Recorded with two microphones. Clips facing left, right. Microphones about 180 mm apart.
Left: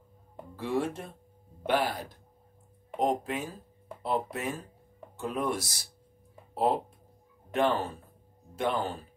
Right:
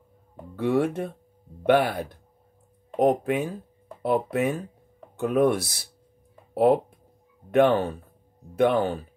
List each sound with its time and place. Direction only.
0.6 s speech: 60° right (ahead or behind)